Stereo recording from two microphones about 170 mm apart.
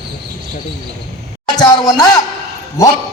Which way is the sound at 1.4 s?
25° left (ahead or behind).